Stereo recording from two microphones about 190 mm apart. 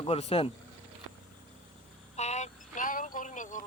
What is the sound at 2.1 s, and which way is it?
Music, 35° left (ahead or behind).